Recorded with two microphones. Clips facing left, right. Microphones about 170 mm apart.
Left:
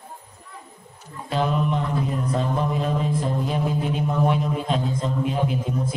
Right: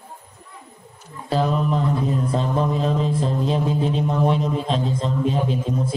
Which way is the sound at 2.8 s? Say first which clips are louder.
Right 2 dB; 25° right (ahead or behind).